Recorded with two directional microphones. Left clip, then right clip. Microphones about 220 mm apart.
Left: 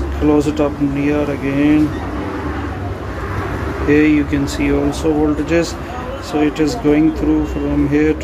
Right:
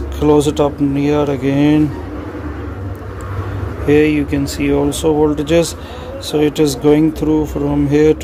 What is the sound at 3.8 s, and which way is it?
Speech, 35° right (ahead or behind).